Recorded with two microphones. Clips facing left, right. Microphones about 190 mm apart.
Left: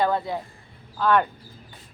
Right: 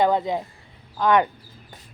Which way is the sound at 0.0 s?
20° right (ahead or behind).